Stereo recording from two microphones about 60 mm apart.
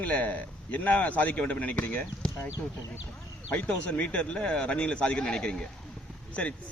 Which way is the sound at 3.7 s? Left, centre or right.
Left.